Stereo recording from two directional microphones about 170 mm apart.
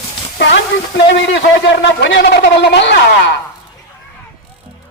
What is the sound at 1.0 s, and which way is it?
A man's voice, 90° left.